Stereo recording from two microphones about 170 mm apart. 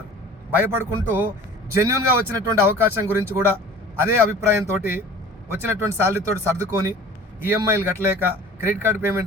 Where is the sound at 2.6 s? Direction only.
15° right (ahead or behind).